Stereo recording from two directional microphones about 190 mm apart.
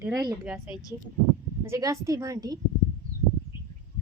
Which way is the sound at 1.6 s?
15° right (ahead or behind).